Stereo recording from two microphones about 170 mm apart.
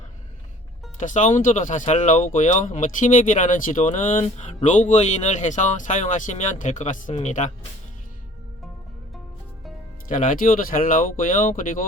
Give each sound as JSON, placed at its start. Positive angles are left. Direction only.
{"t": 0.9, "sound": "speech", "side_deg": 45}
{"t": 10.1, "sound": "speech", "side_deg": 50}